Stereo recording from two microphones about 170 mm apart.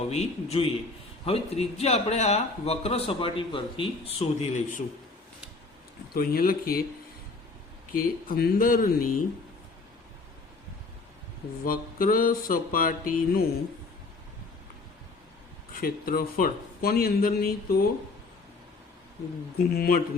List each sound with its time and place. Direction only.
0.1 s speech: 40° left (ahead or behind)
6.1 s speech: 60° left (ahead or behind)
7.9 s speech: 55° left (ahead or behind)
11.6 s speech: 55° left (ahead or behind)
15.7 s speech: 60° left (ahead or behind)
19.7 s speech: 60° left (ahead or behind)